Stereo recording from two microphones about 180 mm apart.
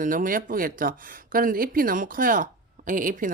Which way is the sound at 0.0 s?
50° right (ahead or behind).